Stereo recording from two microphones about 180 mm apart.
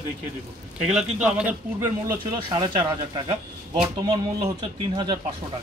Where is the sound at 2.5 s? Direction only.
30° right (ahead or behind).